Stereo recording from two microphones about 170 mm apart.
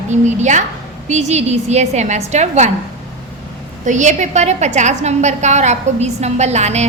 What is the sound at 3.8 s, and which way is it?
A woman's voice, 45° right (ahead or behind).